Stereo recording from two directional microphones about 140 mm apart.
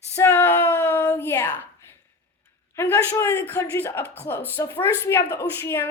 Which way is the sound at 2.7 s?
15° left (ahead or behind).